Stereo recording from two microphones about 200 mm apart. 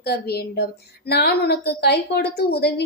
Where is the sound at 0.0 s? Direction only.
55° left (ahead or behind).